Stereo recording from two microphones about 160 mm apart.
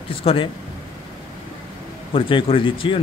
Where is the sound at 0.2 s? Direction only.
35° left (ahead or behind).